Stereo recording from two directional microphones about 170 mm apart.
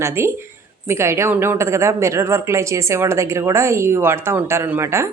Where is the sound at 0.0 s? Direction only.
15° right (ahead or behind).